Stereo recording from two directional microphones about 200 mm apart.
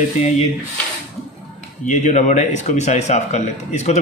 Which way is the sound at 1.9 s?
35° left (ahead or behind).